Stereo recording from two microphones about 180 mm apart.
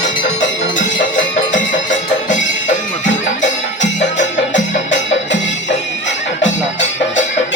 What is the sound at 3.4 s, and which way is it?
Music, 40° left (ahead or behind).